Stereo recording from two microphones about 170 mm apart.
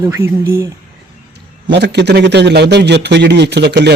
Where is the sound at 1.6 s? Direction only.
80° right.